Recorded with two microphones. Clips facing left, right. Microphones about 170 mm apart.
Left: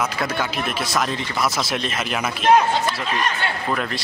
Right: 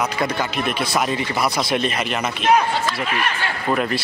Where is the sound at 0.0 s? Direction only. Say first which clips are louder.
Right 2 dB; centre (ahead or behind).